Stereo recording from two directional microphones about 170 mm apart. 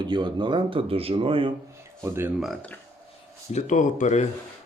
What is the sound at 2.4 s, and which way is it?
Speech, 5° left (ahead or behind).